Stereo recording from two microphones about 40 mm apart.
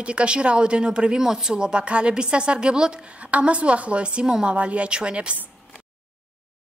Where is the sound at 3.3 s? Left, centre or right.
Right.